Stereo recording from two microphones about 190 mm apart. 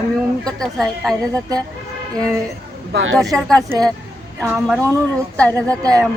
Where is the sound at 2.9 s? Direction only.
75° right (ahead or behind).